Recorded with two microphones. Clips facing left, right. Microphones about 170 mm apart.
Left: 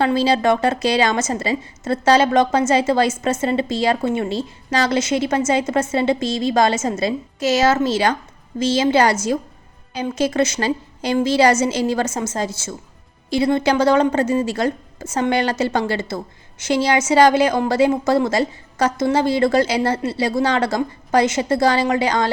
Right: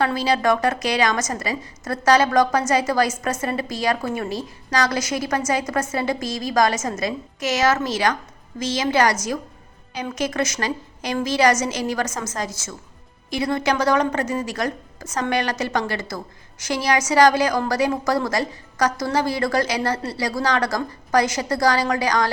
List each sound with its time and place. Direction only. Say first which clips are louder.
0.0 s a woman's voice: left 3 dB; 25° left (ahead or behind)